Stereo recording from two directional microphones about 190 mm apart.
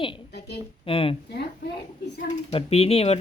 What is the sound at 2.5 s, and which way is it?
Speech, 30° left (ahead or behind).